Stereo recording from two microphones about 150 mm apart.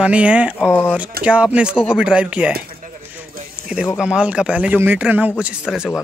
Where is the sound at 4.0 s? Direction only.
5° right (ahead or behind).